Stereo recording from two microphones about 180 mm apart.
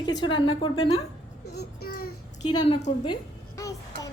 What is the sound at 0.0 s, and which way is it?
A woman's voice, 25° left (ahead or behind).